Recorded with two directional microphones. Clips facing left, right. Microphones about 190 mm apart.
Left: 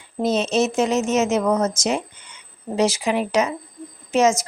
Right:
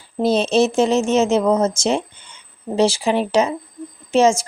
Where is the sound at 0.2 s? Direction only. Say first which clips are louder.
Right 4 dB; 30° right (ahead or behind).